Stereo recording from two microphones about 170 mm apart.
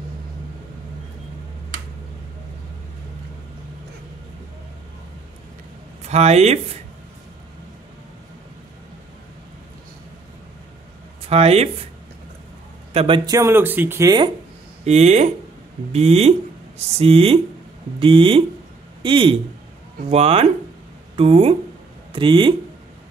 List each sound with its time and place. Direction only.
6.0 s speech: 40° right (ahead or behind)
11.2 s speech: 35° right (ahead or behind)
12.9 s speech: 30° right (ahead or behind)
14.9 s speech: 40° right (ahead or behind)